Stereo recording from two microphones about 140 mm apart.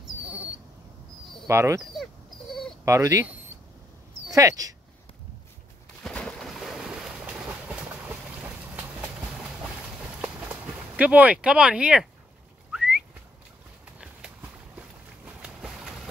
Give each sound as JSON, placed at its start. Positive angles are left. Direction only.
{"t": 0.0, "sound": "a sound", "side_deg": -5}
{"t": 1.5, "sound": "speech", "side_deg": -20}
{"t": 2.0, "sound": "a sound", "side_deg": 0}
{"t": 2.8, "sound": "speech", "side_deg": -20}
{"t": 4.3, "sound": "speech", "side_deg": -25}
{"t": 6.0, "sound": "vehicle", "side_deg": 5}
{"t": 12.7, "sound": "whistling", "side_deg": -5}
{"t": 13.9, "sound": "clip-clop", "side_deg": -5}
{"t": 14.8, "sound": "boat", "side_deg": -5}